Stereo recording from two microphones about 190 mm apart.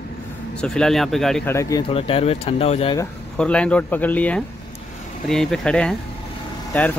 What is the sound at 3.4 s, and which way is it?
Speech, 5° left (ahead or behind).